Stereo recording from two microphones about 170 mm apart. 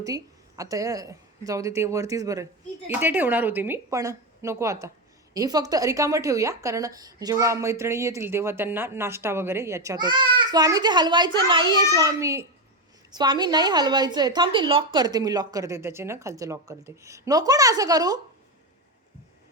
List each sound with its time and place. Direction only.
0.0 s a woman's voice: 20° right (ahead or behind)